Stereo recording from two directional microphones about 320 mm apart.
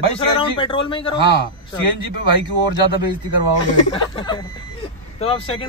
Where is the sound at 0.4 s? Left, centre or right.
Centre.